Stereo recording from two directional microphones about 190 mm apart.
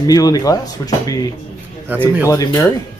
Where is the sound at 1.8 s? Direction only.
10° right (ahead or behind).